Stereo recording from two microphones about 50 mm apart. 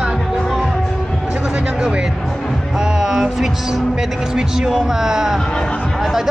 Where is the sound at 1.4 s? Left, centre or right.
Centre.